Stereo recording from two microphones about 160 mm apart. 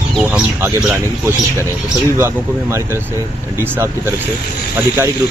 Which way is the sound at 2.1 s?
15° right (ahead or behind).